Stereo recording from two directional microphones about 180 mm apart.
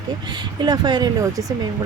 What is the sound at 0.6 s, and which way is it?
Speech, 25° right (ahead or behind).